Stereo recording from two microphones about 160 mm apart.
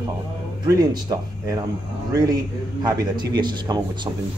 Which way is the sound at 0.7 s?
25° right (ahead or behind).